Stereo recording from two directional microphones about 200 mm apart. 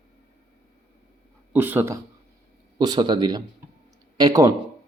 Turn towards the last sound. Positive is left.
turn(degrees=-20)  # may be behind; listen again after turning